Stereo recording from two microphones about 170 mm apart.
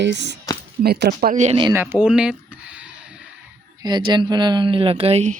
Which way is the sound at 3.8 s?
25° right (ahead or behind).